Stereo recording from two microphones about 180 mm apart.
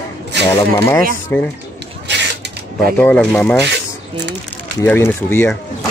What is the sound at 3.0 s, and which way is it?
Speech, 10° left (ahead or behind).